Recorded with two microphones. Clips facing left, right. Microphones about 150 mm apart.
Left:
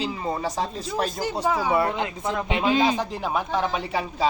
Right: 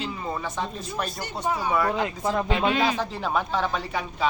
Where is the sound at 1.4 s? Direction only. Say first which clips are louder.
Left 2 dB; 90° left.